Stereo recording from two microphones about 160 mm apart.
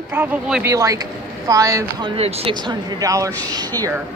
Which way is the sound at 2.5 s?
30° right (ahead or behind).